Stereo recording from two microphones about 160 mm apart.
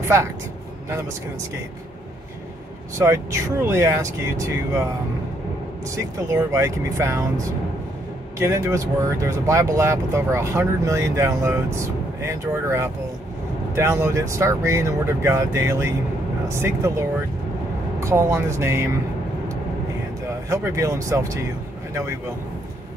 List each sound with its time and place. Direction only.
3.0 s speech: 20° right (ahead or behind)
18.0 s speech: 15° right (ahead or behind)
20.4 s speech: 20° right (ahead or behind)